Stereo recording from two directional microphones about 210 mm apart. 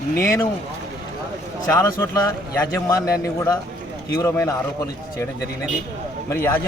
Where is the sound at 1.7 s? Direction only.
15° left (ahead or behind).